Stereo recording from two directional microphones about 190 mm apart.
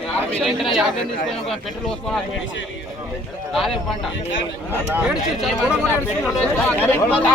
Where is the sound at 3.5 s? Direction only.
Centre (ahead or behind).